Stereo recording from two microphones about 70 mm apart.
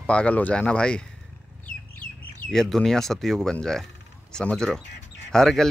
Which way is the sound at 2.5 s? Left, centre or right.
Centre.